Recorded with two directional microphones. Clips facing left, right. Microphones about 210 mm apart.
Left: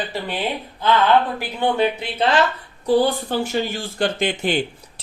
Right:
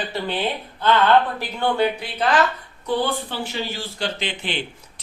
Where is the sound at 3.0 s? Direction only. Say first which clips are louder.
Left 5 dB; 40° left (ahead or behind).